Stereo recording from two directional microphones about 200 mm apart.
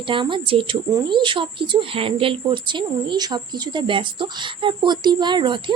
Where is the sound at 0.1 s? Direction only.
25° right (ahead or behind).